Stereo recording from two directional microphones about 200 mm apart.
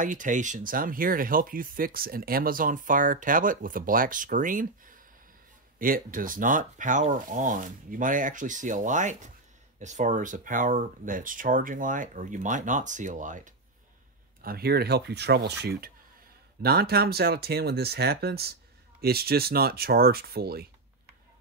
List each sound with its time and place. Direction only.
0.0 s speech: 40° right (ahead or behind)
14.4 s speech: 50° right (ahead or behind)